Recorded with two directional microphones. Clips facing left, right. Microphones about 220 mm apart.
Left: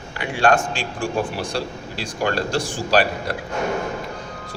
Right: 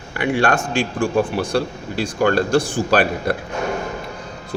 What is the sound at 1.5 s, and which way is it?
A man's voice, 50° right (ahead or behind).